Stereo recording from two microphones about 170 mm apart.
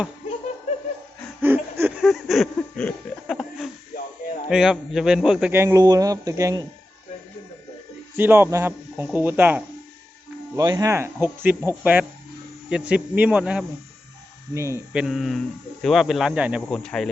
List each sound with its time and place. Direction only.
1.4 s a sound: 10° right (ahead or behind)
2.0 s a sound: centre (ahead or behind)
4.4 s a man's voice: 5° right (ahead or behind); by 6.7 s 20° right (ahead or behind)
8.1 s a man's voice: 10° right (ahead or behind)
10.6 s a man's voice: 20° right (ahead or behind)
14.9 s speech: 5° right (ahead or behind)